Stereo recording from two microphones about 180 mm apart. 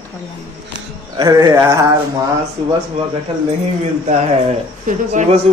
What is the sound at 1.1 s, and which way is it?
Speech, 20° right (ahead or behind).